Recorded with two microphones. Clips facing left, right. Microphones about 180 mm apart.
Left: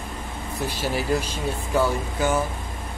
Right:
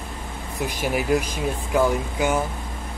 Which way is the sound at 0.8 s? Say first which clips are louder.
Right 3 dB; 15° right (ahead or behind).